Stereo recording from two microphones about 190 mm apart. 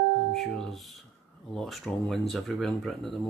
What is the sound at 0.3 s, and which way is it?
Speech, centre (ahead or behind).